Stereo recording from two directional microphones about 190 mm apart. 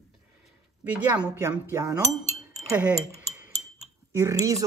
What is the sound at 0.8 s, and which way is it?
Speech, 10° right (ahead or behind).